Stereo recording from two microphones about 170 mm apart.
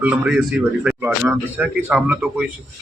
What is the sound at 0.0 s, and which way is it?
A man's voice, 5° right (ahead or behind).